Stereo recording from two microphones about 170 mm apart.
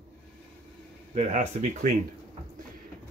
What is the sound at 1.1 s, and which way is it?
Speech, 40° right (ahead or behind).